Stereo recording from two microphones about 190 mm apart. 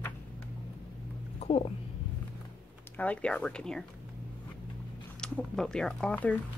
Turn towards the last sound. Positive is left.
turn(degrees=5)  # may be behind; listen again after turning